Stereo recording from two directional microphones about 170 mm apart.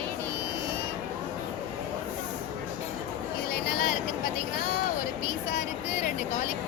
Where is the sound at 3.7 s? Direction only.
55° left (ahead or behind).